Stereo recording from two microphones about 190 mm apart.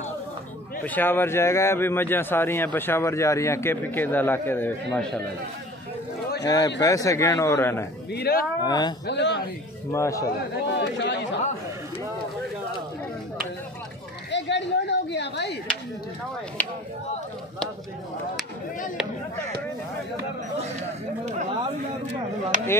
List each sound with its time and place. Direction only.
0.8 s speech: 10° left (ahead or behind)
6.4 s speech: 20° left (ahead or behind)
8.1 s speech: 55° left (ahead or behind)
8.6 s speech: 20° left (ahead or behind)
9.0 s speech: 65° left (ahead or behind)
9.8 s speech: 15° left (ahead or behind)
10.2 s speech: 65° left (ahead or behind)
14.3 s a sound: 65° left (ahead or behind)